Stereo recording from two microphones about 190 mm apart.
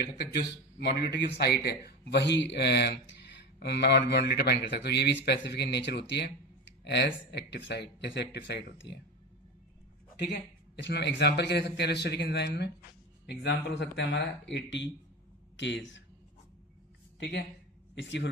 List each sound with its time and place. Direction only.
0.0 s speech: 55° left (ahead or behind)
10.8 s speech: 65° left (ahead or behind)
17.2 s speech: 70° left (ahead or behind)